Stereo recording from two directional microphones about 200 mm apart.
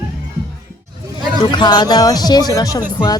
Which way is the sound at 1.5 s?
20° left (ahead or behind).